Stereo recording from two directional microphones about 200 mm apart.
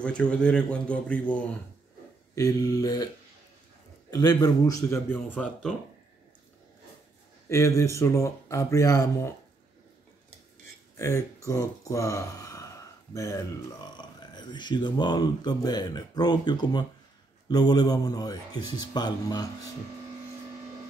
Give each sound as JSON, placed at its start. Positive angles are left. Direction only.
{"t": 0.0, "sound": "speech", "side_deg": 5}
{"t": 2.3, "sound": "speech", "side_deg": 15}
{"t": 4.1, "sound": "speech", "side_deg": 20}
{"t": 7.4, "sound": "speech", "side_deg": 15}
{"t": 11.0, "sound": "speech", "side_deg": 15}